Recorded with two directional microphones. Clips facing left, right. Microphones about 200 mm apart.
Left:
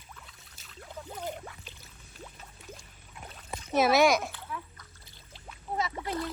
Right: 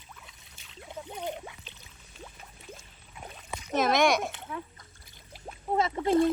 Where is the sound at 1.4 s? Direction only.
10° right (ahead or behind).